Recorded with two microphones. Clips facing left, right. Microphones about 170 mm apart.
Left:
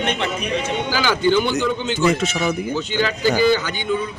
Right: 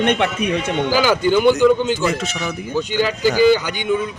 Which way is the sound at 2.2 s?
20° left (ahead or behind).